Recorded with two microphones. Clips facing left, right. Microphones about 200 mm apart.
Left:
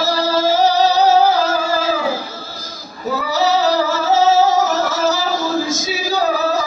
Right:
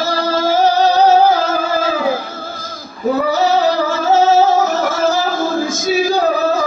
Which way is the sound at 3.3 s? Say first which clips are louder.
Left 3 dB; 50° right (ahead or behind).